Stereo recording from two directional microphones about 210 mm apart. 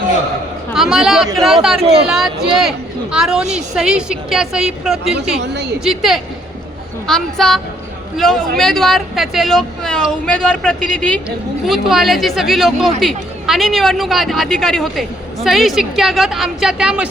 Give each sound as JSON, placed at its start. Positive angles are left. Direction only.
{"t": 0.7, "sound": "speech", "side_deg": 0}
{"t": 1.8, "sound": "speech", "side_deg": -30}
{"t": 2.0, "sound": "speech", "side_deg": 0}
{"t": 5.4, "sound": "a woman's voice", "side_deg": -55}
{"t": 5.8, "sound": "speech", "side_deg": 0}